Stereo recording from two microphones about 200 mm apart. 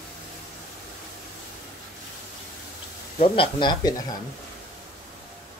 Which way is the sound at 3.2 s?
25° left (ahead or behind).